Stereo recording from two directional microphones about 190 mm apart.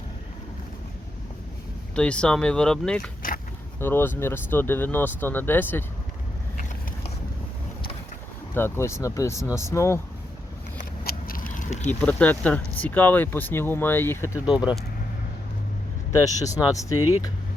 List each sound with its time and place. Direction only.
2.0 s speech: 5° left (ahead or behind)
8.5 s speech: 10° left (ahead or behind)
10.8 s a sound: 50° left (ahead or behind)
11.9 s speech: 10° left (ahead or behind)
14.4 s speech: 5° right (ahead or behind)
16.1 s speech: 15° left (ahead or behind)